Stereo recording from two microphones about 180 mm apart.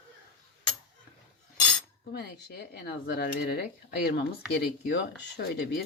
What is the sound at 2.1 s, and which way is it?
Speech, 65° left (ahead or behind).